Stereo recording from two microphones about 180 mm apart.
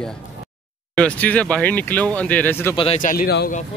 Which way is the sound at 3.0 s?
50° left (ahead or behind).